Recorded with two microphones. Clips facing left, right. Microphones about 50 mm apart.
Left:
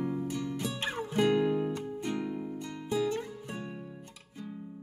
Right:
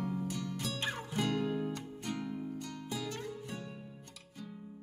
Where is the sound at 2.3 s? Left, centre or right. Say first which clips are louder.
Left 3 dB; centre.